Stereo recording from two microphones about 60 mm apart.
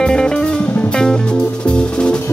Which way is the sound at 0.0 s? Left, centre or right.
Centre.